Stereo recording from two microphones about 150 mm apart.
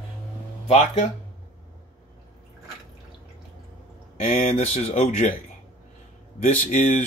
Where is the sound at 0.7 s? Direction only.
50° left (ahead or behind).